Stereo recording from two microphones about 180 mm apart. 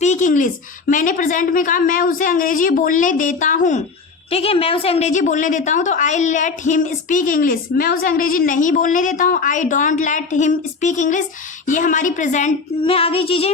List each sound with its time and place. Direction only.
0.0 s a woman's voice: 40° left (ahead or behind)
4.3 s a woman's voice: 35° left (ahead or behind)
12.8 s female singing: 30° left (ahead or behind)